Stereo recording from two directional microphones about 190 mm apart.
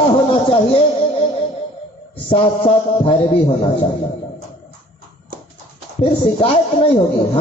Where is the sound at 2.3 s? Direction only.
25° left (ahead or behind).